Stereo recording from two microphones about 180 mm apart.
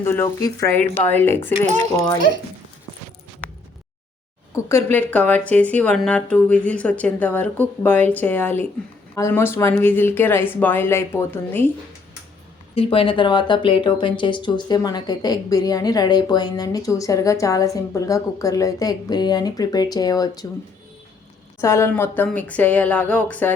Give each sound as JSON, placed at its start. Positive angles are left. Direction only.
{"t": 0.0, "sound": "speech", "side_deg": 15}
{"t": 4.5, "sound": "speech", "side_deg": 15}
{"t": 12.7, "sound": "speech", "side_deg": 30}
{"t": 21.6, "sound": "speech", "side_deg": 15}